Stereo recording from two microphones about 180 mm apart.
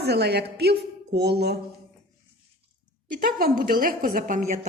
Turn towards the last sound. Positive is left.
turn(degrees=-45)  # may be behind; listen again after turning